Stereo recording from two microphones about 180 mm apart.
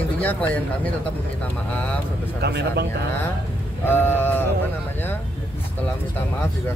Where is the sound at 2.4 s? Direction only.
65° right (ahead or behind).